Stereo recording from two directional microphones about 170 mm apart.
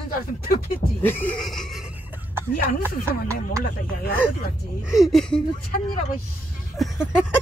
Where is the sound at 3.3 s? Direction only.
15° right (ahead or behind).